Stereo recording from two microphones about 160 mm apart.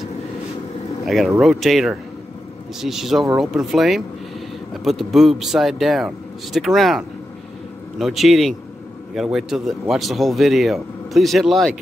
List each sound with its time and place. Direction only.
1.0 s speech: centre (ahead or behind)